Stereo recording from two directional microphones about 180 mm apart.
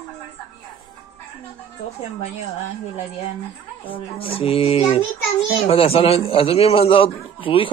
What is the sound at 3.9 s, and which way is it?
A man's voice, 30° left (ahead or behind).